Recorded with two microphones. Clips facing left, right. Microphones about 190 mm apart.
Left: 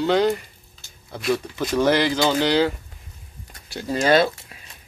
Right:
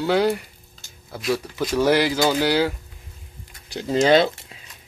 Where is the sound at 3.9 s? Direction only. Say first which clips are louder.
Right 2 dB; 20° right (ahead or behind).